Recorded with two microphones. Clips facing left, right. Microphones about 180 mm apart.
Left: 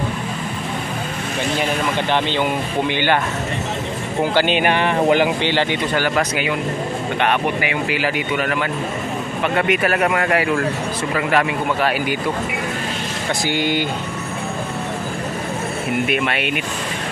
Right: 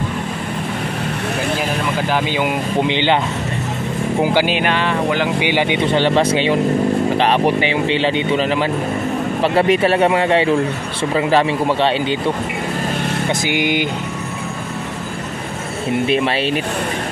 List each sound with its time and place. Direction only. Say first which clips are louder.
2.9 s speech: right 1 dB; 20° right (ahead or behind)
4.2 s speech: even; 10° right (ahead or behind); by 12.2 s 25° right (ahead or behind)
13.5 s speech: even; 15° right (ahead or behind)
16.1 s speech: right 4 dB; 30° right (ahead or behind)